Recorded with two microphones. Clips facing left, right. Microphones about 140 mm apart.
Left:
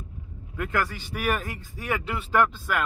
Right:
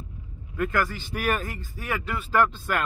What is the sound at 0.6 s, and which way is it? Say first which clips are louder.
Speech: right 2 dB; 10° left (ahead or behind).